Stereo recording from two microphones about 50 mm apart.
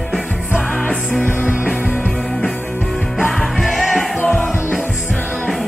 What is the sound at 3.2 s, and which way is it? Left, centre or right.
Music, centre.